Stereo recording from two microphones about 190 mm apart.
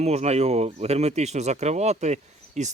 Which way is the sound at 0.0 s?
35° right (ahead or behind).